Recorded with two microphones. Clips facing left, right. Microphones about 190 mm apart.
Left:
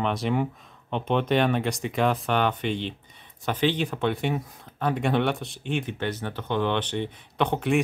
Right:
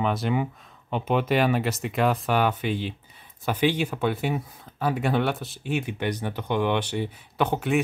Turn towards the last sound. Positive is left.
turn(degrees=-5)  # may be behind; listen again after turning